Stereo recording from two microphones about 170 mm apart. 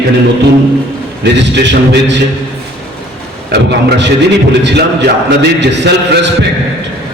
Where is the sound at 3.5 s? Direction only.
80° right.